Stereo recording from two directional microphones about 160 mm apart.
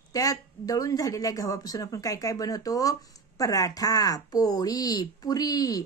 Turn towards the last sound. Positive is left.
turn(degrees=20)  # may be behind; listen again after turning